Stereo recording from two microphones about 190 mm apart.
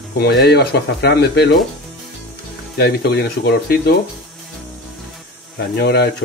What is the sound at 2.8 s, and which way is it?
Speech, 60° left (ahead or behind).